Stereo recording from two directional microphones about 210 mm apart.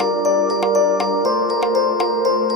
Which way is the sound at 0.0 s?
Centre (ahead or behind).